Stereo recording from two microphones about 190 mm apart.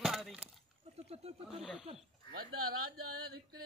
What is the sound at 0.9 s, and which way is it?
Speech, 35° right (ahead or behind).